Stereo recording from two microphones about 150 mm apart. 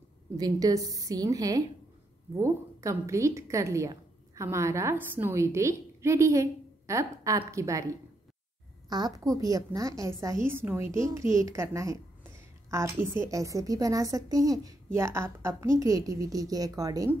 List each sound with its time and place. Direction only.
0.4 s a woman's voice: 25° right (ahead or behind)